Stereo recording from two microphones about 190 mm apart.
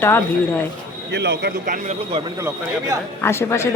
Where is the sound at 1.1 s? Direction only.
65° right (ahead or behind).